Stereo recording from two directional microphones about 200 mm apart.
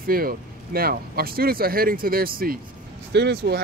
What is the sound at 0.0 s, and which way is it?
Speech, 45° right (ahead or behind).